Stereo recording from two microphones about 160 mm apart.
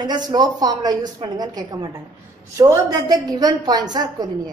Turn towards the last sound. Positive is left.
turn(degrees=-25)  # may be behind; listen again after turning